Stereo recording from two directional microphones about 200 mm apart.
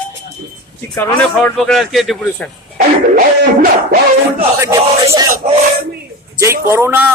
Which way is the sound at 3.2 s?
45° right (ahead or behind).